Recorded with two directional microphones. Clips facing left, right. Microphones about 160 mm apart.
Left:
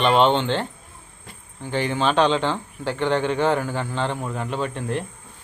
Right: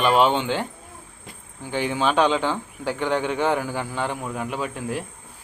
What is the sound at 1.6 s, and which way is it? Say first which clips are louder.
A man's voice: left 1 dB; 10° right (ahead or behind).